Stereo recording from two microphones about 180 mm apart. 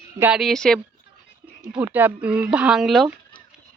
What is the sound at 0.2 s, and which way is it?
Speech, 5° right (ahead or behind).